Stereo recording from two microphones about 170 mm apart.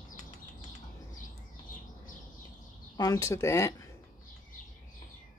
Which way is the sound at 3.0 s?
20° left (ahead or behind).